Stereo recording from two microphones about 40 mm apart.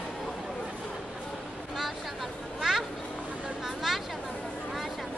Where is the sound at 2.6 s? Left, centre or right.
Centre.